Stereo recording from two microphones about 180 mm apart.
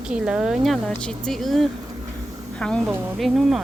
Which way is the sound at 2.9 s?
10° right (ahead or behind).